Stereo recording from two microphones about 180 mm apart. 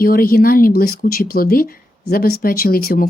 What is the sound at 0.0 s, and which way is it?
Speech, 55° left (ahead or behind).